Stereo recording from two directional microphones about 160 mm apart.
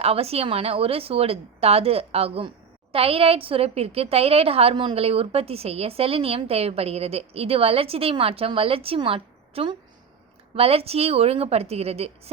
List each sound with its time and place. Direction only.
0.0 s a woman's voice: 40° right (ahead or behind)